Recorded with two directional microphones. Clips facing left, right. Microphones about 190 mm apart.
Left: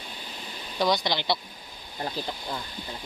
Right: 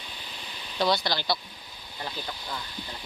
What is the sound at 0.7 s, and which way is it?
Speech, 15° left (ahead or behind).